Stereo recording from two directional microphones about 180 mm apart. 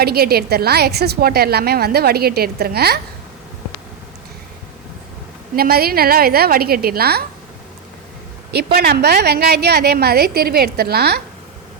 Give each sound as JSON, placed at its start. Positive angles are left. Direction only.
{"t": 0.0, "sound": "a woman's voice", "side_deg": -60}
{"t": 5.5, "sound": "a woman's voice", "side_deg": -60}
{"t": 8.5, "sound": "a woman's voice", "side_deg": -60}